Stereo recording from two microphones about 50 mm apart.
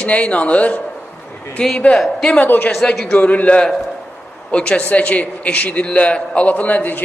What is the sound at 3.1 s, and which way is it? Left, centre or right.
Speech, left.